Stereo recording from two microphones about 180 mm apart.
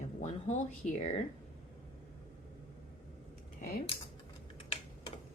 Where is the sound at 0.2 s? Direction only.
40° left (ahead or behind).